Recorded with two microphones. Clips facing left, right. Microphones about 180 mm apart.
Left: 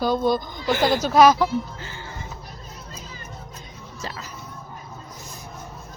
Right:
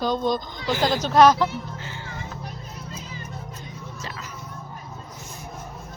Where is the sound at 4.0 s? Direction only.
35° left (ahead or behind).